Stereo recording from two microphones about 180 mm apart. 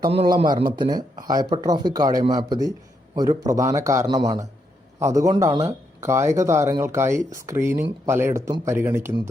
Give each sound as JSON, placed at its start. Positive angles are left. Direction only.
{"t": 0.1, "sound": "speech", "side_deg": -35}